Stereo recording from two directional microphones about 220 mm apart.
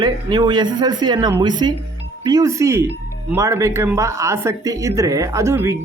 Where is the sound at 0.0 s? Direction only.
20° right (ahead or behind).